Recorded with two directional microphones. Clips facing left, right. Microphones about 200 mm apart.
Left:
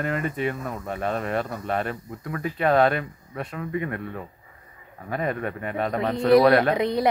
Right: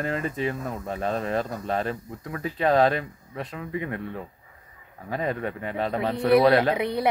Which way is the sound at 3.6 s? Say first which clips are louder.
Left 2 dB; 25° right (ahead or behind).